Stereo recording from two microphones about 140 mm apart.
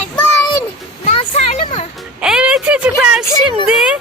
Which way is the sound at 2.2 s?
5° right (ahead or behind).